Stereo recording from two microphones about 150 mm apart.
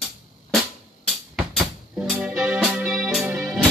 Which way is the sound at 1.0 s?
Centre (ahead or behind).